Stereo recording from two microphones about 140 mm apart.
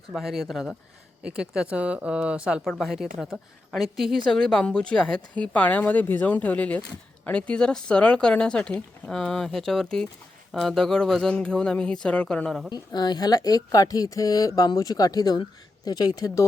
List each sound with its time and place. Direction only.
0.1 s speech: centre (ahead or behind)
12.7 s speech: 30° left (ahead or behind)